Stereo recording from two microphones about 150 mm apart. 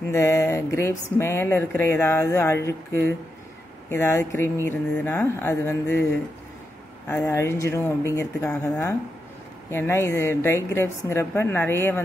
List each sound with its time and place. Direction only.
0.1 s speech: 15° left (ahead or behind)
7.1 s speech: 20° left (ahead or behind)
9.7 s speech: 15° left (ahead or behind)